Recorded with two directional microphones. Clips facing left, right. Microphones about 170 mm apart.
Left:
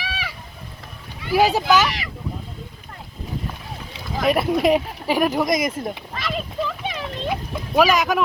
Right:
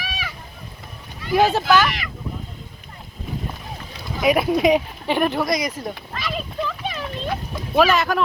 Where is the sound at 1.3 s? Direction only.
10° left (ahead or behind).